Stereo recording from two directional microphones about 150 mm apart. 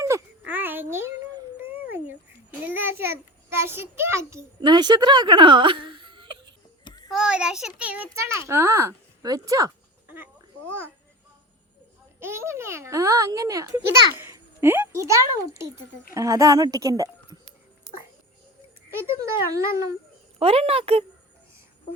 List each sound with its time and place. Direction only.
0.0 s a sound: 15° right (ahead or behind)
4.6 s speech: 30° right (ahead or behind)
7.1 s a sound: 5° right (ahead or behind)
7.8 s a child's voice: 10° right (ahead or behind)
12.2 s a child's voice: 15° right (ahead or behind)
18.9 s a child's voice: 20° right (ahead or behind)
20.4 s speech: 40° right (ahead or behind)